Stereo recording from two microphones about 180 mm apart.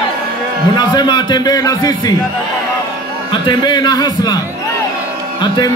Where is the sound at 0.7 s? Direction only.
25° left (ahead or behind).